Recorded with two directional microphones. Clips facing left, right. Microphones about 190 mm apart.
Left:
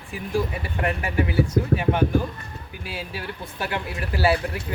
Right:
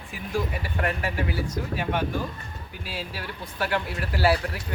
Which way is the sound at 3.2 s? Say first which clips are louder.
Right 1 dB; 25° left (ahead or behind).